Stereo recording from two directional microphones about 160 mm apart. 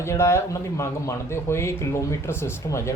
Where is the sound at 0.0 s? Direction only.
15° left (ahead or behind).